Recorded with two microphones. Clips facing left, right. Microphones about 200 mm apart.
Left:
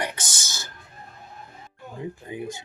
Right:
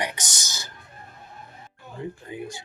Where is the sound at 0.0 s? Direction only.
15° right (ahead or behind).